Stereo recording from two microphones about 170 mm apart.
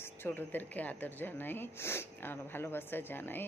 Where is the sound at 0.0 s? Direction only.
15° left (ahead or behind).